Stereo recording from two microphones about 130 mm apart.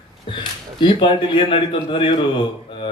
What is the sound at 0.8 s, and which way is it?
Speech, 40° left (ahead or behind).